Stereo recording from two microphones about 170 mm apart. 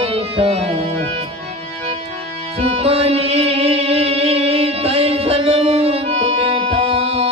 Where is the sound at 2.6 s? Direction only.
35° right (ahead or behind).